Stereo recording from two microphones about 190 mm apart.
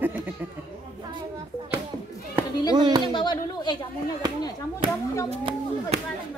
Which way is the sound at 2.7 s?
20° right (ahead or behind).